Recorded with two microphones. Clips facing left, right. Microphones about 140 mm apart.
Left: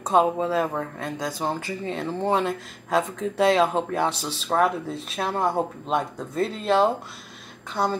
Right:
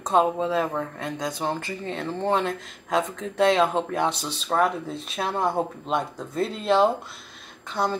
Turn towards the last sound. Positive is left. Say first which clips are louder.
# left 1 dB
turn(degrees=0)  # may be behind; listen again after turning